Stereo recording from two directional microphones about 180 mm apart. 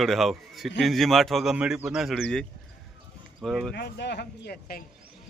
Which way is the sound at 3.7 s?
70° left (ahead or behind).